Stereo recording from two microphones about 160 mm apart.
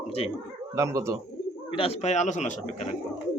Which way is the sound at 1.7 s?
40° left (ahead or behind).